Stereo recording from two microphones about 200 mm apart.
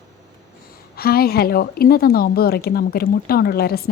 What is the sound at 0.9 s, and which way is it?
Speech, 50° left (ahead or behind).